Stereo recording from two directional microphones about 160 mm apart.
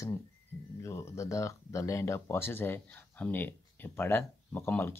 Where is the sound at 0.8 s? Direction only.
20° left (ahead or behind).